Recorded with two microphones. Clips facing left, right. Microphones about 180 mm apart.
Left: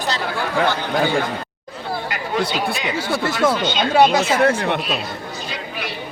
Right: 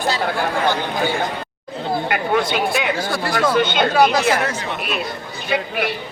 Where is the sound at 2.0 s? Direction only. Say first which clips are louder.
Right 6 dB; 60° right (ahead or behind).